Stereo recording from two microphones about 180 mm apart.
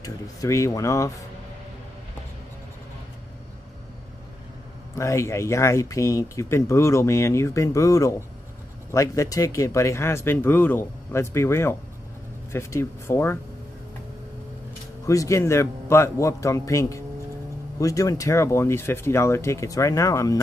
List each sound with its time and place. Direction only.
0.0 s speech: 15° left (ahead or behind)
4.9 s speech: 15° left (ahead or behind)
15.0 s speech: 15° left (ahead or behind)